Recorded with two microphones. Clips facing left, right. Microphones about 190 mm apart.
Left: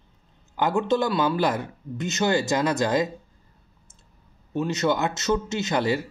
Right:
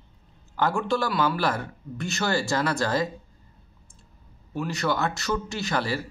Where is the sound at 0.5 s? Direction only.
20° left (ahead or behind).